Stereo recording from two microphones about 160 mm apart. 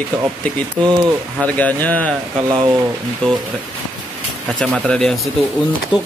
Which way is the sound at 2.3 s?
30° right (ahead or behind).